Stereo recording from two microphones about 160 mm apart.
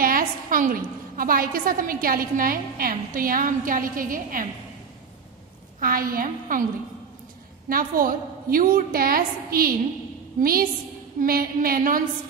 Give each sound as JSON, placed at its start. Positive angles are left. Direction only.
{"t": 0.0, "sound": "a woman's voice", "side_deg": -60}
{"t": 5.8, "sound": "a woman's voice", "side_deg": -65}
{"t": 7.7, "sound": "a woman's voice", "side_deg": -60}